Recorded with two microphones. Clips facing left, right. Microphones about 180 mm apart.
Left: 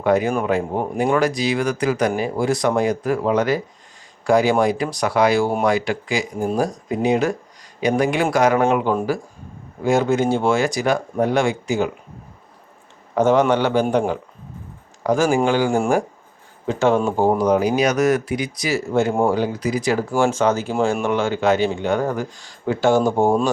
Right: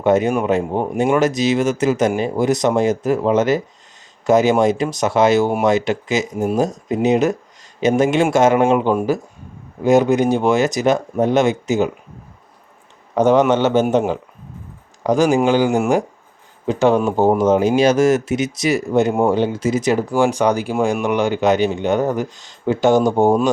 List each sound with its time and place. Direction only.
0.0 s speech: 25° right (ahead or behind)
13.1 s speech: 20° right (ahead or behind)
15.0 s speech: 20° right (ahead or behind)